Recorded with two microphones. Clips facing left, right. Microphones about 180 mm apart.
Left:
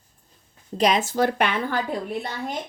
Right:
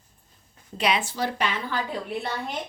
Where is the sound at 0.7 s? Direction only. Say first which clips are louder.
Left 5 dB; 40° left (ahead or behind); by 1.8 s 60° left (ahead or behind).